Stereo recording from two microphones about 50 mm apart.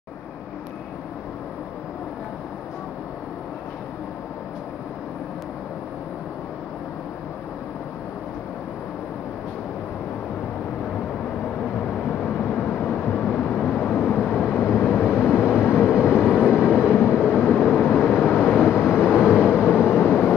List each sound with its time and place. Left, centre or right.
12.2 s vehicle: left
14.3 s vehicle: centre
16.3 s vehicle: centre